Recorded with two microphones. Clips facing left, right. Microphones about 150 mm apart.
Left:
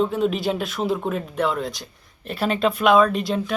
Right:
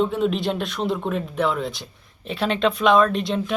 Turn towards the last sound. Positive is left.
turn(degrees=0)  # may be behind; listen again after turning